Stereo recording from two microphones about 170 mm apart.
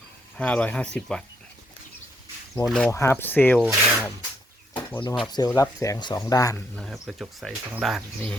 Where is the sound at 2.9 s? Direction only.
15° left (ahead or behind).